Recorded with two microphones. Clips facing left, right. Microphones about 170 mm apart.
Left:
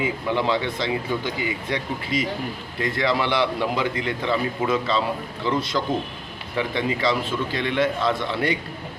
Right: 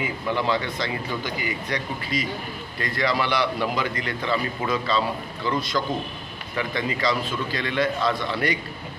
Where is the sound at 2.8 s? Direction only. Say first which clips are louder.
Left 2 dB; 25° left (ahead or behind).